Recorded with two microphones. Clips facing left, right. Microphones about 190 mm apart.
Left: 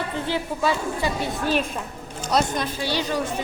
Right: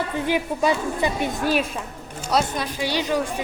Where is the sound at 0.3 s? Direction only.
15° right (ahead or behind).